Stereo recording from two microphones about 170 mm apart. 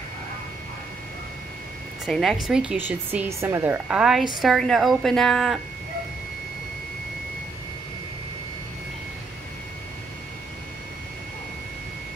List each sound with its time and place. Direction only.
2.0 s a woman's voice: centre (ahead or behind)